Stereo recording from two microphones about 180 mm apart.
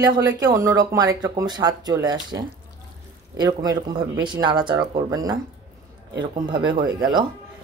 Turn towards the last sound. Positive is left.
turn(degrees=-25)  # may be behind; listen again after turning